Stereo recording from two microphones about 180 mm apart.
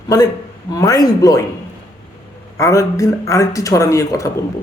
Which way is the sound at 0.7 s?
20° left (ahead or behind).